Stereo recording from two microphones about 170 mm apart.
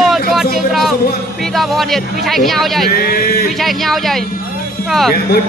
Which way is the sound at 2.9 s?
60° left (ahead or behind).